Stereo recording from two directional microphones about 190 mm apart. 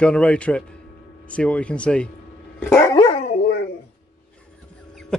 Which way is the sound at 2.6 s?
15° left (ahead or behind).